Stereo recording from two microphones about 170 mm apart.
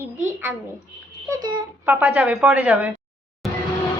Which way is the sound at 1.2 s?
20° right (ahead or behind).